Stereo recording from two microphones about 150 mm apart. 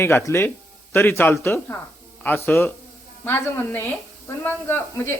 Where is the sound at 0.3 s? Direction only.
15° left (ahead or behind).